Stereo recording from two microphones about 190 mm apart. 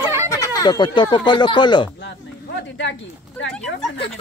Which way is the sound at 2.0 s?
70° left (ahead or behind).